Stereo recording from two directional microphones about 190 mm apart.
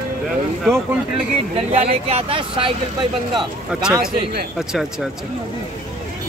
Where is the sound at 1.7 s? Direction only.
30° right (ahead or behind).